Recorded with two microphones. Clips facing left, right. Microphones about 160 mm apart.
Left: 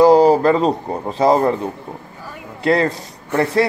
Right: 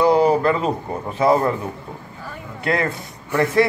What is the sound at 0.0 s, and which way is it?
A man's voice, 35° left (ahead or behind).